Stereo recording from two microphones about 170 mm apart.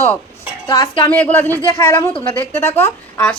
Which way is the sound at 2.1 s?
30° left (ahead or behind).